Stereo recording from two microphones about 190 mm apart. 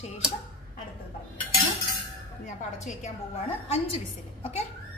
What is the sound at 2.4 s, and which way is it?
Speech, 40° left (ahead or behind).